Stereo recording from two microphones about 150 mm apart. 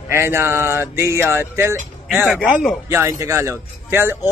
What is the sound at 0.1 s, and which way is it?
A man's voice, 15° right (ahead or behind).